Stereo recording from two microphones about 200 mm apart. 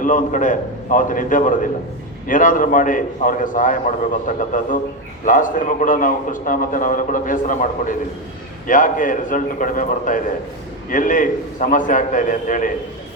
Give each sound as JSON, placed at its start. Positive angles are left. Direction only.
{"t": 0.0, "sound": "a man's voice", "side_deg": 40}